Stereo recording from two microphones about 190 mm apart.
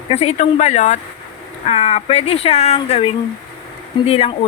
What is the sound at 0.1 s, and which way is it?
Speech, 35° left (ahead or behind).